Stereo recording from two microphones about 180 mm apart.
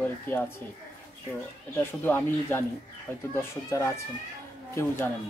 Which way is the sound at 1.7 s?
10° left (ahead or behind).